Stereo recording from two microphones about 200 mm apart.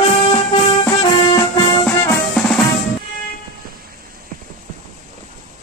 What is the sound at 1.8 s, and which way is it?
Drum, 10° left (ahead or behind).